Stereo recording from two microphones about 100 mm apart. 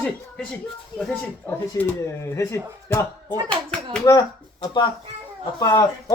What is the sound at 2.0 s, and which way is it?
Speech, 30° left (ahead or behind).